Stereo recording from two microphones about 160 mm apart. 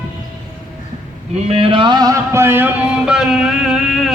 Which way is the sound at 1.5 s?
35° right (ahead or behind).